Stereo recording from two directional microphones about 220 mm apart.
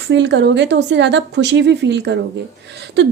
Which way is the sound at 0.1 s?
55° right (ahead or behind).